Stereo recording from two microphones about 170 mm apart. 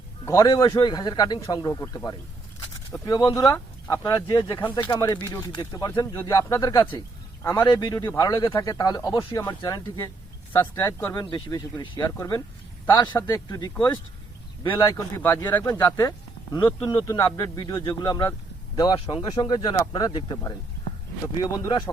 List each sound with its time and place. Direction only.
0.3 s speech: 20° left (ahead or behind)
14.8 s speech: 20° left (ahead or behind)